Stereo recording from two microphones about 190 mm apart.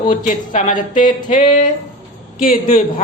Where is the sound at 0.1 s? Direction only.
40° left (ahead or behind).